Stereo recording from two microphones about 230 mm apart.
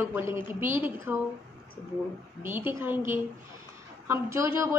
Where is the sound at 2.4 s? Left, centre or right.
Centre.